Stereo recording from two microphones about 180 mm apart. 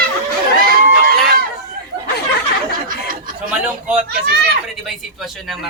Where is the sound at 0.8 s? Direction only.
55° right (ahead or behind).